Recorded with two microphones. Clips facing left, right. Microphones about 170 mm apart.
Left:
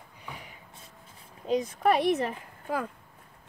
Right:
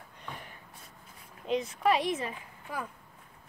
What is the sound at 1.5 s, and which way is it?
Speech, 50° left (ahead or behind).